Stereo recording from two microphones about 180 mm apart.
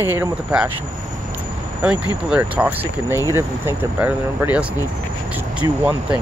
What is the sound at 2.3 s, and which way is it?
Speech, 5° right (ahead or behind).